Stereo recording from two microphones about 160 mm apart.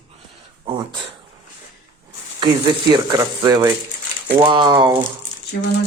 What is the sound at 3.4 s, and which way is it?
Speech, 25° right (ahead or behind).